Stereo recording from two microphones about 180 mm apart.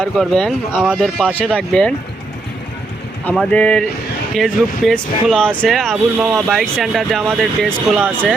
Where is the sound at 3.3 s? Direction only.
5° left (ahead or behind).